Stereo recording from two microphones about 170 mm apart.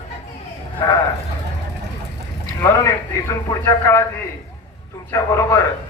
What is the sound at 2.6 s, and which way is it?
A man's voice, 20° left (ahead or behind).